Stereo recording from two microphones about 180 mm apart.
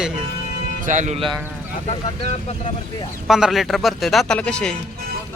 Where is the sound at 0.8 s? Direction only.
45° right (ahead or behind).